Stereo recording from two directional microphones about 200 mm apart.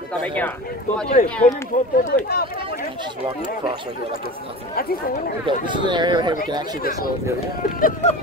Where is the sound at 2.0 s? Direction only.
45° left (ahead or behind).